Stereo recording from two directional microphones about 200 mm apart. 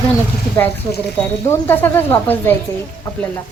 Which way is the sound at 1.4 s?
10° left (ahead or behind).